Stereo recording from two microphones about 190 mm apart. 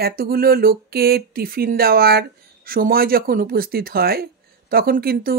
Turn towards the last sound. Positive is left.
turn(degrees=-50)  # may be behind; listen again after turning